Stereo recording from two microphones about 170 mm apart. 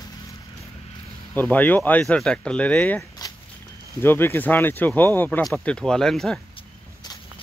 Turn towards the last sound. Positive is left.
turn(degrees=0)  # may be behind; listen again after turning